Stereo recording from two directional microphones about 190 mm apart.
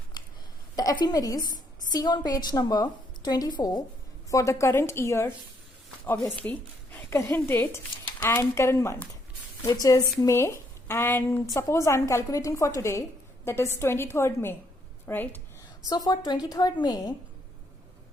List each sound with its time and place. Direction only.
0.8 s a woman's voice: 20° left (ahead or behind)
15.9 s a woman's voice: 20° left (ahead or behind)